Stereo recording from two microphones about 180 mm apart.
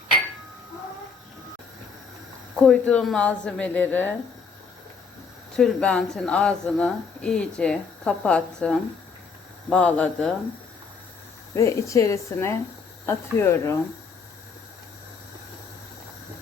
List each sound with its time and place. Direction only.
2.6 s a woman's voice: 5° left (ahead or behind)
5.5 s a woman's voice: 5° left (ahead or behind)
11.5 s a woman's voice: 15° left (ahead or behind)